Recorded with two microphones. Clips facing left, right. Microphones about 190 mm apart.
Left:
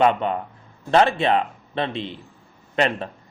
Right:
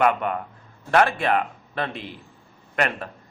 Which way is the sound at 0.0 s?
25° left (ahead or behind).